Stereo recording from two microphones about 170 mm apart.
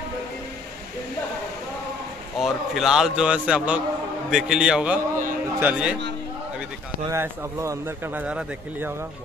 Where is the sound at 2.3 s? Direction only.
Centre (ahead or behind).